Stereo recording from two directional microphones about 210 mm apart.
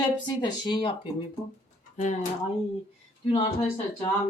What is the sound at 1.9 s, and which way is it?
Speech, 35° left (ahead or behind).